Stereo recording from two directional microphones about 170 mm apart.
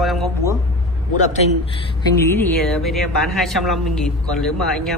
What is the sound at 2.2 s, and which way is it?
Speech, 15° left (ahead or behind).